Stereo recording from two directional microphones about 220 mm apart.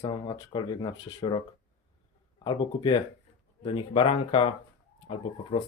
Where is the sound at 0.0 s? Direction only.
20° left (ahead or behind).